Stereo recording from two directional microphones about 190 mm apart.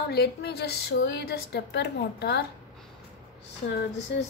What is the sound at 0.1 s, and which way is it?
A woman's voice, 55° left (ahead or behind).